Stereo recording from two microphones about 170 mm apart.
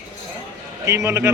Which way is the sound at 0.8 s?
15° right (ahead or behind).